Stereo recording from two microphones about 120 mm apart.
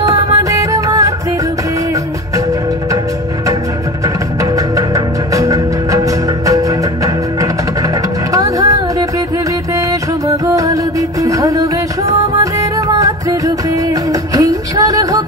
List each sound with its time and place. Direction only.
0.0 s music: 30° right (ahead or behind)
4.4 s music: 30° right (ahead or behind)
8.3 s music: 30° right (ahead or behind)
9.8 s music: 30° right (ahead or behind)